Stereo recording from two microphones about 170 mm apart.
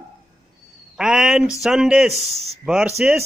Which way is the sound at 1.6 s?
Centre (ahead or behind).